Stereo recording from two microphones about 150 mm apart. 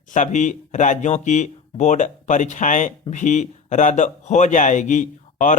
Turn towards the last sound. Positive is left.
turn(degrees=55)  # may be behind; listen again after turning